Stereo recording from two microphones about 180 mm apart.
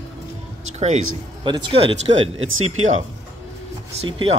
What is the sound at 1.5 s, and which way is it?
Speech, 30° right (ahead or behind).